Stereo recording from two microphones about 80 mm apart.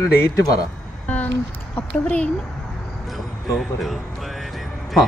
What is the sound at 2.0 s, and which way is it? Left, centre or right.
Speech, centre.